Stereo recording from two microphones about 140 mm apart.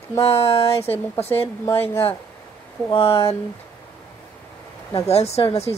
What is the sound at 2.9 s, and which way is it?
Speech, 40° left (ahead or behind).